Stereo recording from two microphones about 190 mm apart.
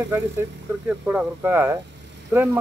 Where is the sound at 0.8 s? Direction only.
10° right (ahead or behind).